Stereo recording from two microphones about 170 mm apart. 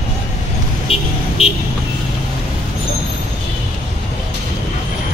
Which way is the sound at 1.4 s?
35° left (ahead or behind).